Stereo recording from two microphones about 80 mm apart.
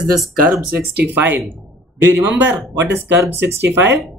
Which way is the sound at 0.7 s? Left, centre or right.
Right.